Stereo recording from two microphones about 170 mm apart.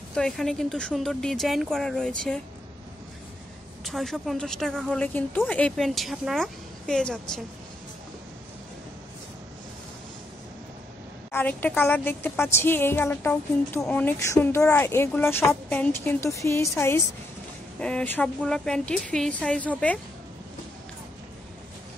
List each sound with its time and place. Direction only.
0.1 s a woman's voice: 5° left (ahead or behind)
3.8 s a woman's voice: centre (ahead or behind)
11.3 s a woman's voice: 10° left (ahead or behind)